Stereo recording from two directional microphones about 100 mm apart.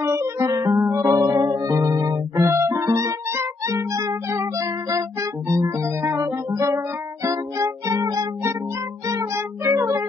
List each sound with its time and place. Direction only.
0.0 s music: 30° right (ahead or behind)